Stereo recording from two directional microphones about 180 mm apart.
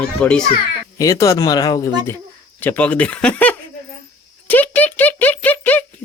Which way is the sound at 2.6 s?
10° left (ahead or behind).